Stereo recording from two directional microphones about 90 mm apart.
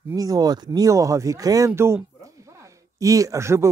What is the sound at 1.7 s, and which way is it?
Speech, 30° right (ahead or behind).